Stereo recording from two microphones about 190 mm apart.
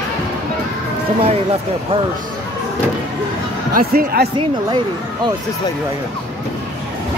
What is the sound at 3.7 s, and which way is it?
Speech, 55° right (ahead or behind).